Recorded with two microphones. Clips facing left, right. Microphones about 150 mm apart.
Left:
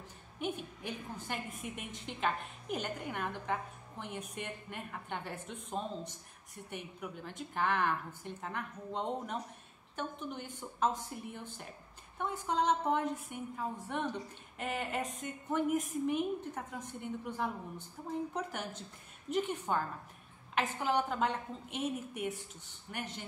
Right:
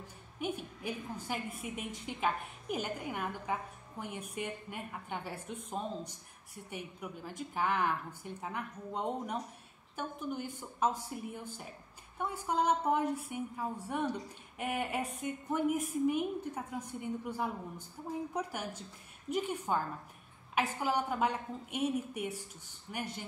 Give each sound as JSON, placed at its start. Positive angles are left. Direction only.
{"t": 0.4, "sound": "a woman's voice", "side_deg": -10}